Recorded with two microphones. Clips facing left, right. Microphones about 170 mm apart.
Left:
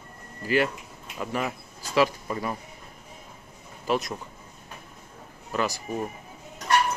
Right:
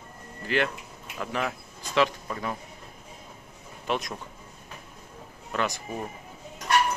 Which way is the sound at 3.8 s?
Centre (ahead or behind).